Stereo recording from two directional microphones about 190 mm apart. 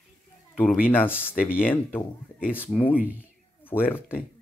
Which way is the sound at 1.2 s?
10° left (ahead or behind).